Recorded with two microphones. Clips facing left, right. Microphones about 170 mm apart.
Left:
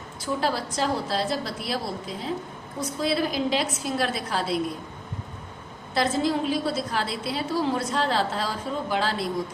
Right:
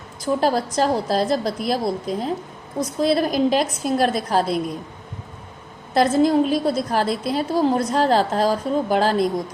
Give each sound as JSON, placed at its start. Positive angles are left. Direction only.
{"t": 0.3, "sound": "a woman's voice", "side_deg": -45}
{"t": 5.9, "sound": "a woman's voice", "side_deg": -50}